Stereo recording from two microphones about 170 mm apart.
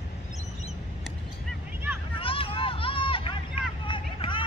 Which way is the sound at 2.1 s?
30° left (ahead or behind).